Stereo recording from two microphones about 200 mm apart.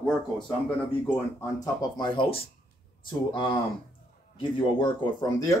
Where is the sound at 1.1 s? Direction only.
15° left (ahead or behind).